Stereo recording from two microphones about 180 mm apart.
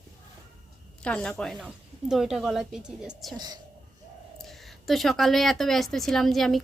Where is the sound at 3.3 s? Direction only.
25° right (ahead or behind).